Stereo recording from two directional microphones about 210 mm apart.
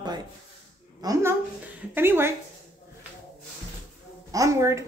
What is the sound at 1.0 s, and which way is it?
Speech, 15° right (ahead or behind).